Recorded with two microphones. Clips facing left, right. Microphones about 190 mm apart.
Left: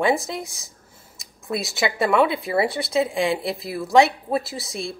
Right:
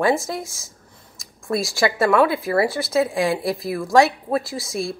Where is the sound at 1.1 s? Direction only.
Centre (ahead or behind).